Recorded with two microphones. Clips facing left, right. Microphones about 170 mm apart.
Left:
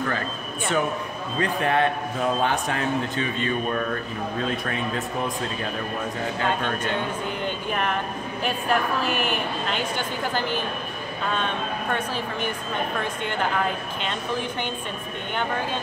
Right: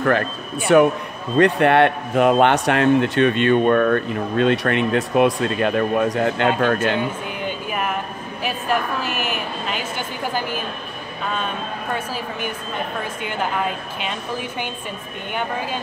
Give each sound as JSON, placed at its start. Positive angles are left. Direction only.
{"t": 0.7, "sound": "a man's voice", "side_deg": -65}
{"t": 7.4, "sound": "a sound", "side_deg": -5}
{"t": 8.5, "sound": "a woman's voice", "side_deg": -5}